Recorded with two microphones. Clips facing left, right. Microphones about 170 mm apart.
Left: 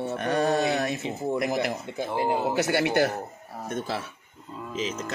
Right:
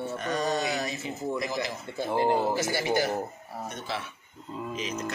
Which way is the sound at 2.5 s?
65° left (ahead or behind).